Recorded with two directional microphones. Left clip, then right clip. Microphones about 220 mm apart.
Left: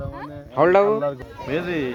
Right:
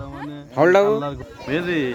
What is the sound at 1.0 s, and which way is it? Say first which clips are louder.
Speech: left 3 dB; 35° right (ahead or behind).